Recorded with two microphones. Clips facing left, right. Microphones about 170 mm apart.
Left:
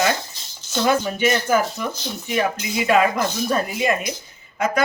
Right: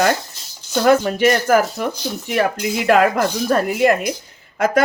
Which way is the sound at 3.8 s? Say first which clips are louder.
Right 8 dB; 60° right (ahead or behind).